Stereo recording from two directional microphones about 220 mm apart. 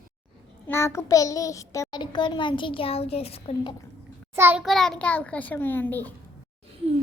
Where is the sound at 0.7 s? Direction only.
10° left (ahead or behind).